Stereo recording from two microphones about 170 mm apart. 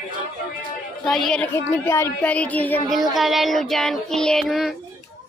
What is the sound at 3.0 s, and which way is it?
Child singing, centre (ahead or behind).